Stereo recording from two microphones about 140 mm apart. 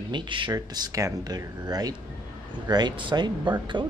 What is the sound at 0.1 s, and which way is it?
Speech, 35° right (ahead or behind).